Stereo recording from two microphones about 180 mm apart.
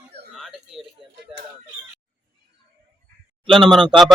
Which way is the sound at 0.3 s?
Centre (ahead or behind).